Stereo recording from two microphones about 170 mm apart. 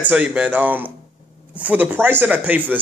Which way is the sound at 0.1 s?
5° right (ahead or behind).